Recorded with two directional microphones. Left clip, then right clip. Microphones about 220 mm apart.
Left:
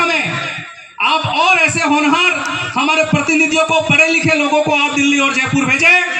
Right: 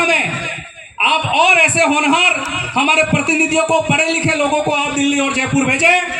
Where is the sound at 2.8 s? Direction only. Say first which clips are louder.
Right 1 dB; 30° right (ahead or behind).